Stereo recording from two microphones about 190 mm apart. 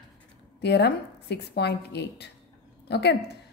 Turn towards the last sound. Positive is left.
turn(degrees=60)  # may be behind; listen again after turning